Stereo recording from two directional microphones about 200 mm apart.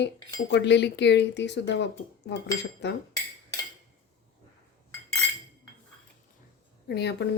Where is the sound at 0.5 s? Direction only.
60° left (ahead or behind).